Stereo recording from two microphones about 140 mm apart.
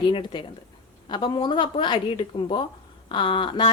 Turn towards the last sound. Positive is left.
turn(degrees=35)  # may be behind; listen again after turning